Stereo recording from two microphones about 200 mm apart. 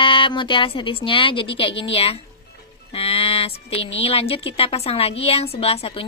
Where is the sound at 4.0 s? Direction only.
30° left (ahead or behind).